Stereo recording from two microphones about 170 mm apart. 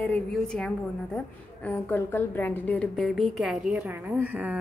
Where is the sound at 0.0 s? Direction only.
5° left (ahead or behind).